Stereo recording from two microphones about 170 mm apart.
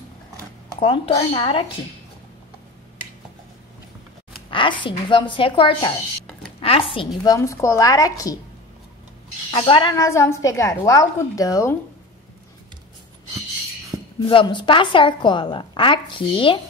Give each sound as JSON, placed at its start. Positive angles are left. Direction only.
{"t": 0.7, "sound": "speech", "side_deg": 35}
{"t": 4.5, "sound": "a woman's voice", "side_deg": 30}
{"t": 7.2, "sound": "a woman's voice", "side_deg": 20}
{"t": 9.5, "sound": "a woman's voice", "side_deg": 30}
{"t": 9.9, "sound": "a woman's voice", "side_deg": 15}
{"t": 14.2, "sound": "a woman's voice", "side_deg": 30}